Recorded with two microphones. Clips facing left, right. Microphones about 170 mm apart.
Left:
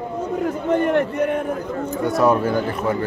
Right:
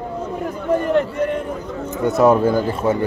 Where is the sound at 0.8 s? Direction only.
60° left (ahead or behind).